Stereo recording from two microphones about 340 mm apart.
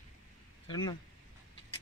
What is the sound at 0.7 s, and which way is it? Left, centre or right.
Speech, centre.